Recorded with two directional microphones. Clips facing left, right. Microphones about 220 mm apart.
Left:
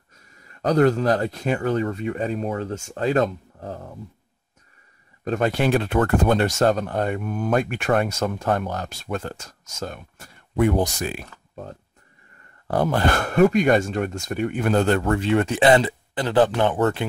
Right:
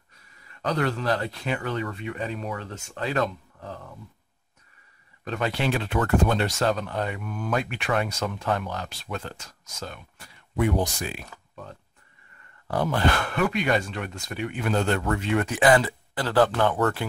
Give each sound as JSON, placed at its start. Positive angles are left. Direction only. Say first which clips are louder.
{"t": 0.1, "sound": "speech", "louder": "left 4 dB", "side_deg": 45}
{"t": 5.2, "sound": "speech", "louder": "left 6 dB", "side_deg": 45}
{"t": 15.1, "sound": "speech", "louder": "left 5 dB", "side_deg": 30}